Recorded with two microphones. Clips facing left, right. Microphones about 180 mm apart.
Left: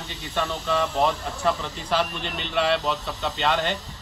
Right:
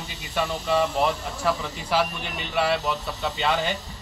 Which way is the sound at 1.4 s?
5° right (ahead or behind).